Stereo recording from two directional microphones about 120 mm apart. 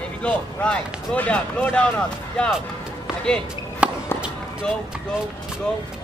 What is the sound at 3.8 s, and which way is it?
Basketball bounce, 10° right (ahead or behind).